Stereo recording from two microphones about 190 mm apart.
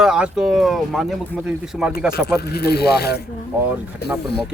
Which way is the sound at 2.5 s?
55° left (ahead or behind).